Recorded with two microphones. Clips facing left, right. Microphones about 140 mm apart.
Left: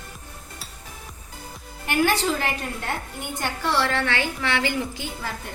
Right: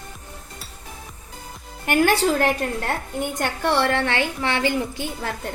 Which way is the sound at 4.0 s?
25° right (ahead or behind).